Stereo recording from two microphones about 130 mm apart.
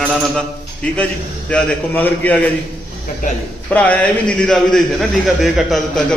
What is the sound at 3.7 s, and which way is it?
A man's voice, 10° left (ahead or behind).